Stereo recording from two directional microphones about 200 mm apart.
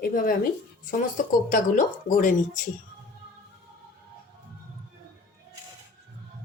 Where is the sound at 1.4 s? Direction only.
40° left (ahead or behind).